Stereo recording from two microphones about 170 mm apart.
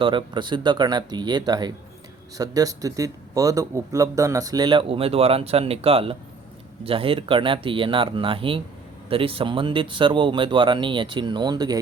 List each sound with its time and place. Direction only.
0.0 s speech: 30° right (ahead or behind)